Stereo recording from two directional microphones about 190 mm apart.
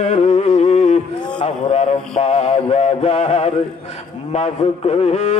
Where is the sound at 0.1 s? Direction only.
35° left (ahead or behind).